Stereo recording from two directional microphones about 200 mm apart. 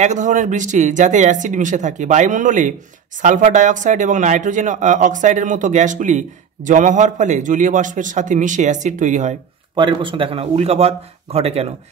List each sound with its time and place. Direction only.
0.0 s a man's voice: 40° right (ahead or behind)
9.8 s a man's voice: 25° right (ahead or behind)